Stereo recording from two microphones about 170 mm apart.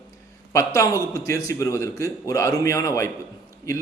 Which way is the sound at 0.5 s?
20° left (ahead or behind).